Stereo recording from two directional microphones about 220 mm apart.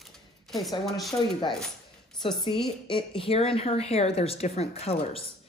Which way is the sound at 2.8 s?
25° left (ahead or behind).